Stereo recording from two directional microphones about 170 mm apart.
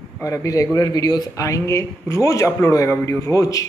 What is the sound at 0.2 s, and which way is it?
Speech, 20° left (ahead or behind).